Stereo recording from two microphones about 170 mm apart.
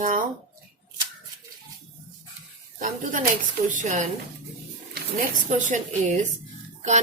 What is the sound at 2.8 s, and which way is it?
A woman's voice, 50° right (ahead or behind).